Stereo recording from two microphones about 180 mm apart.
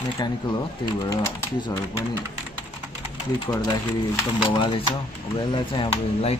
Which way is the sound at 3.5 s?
20° left (ahead or behind).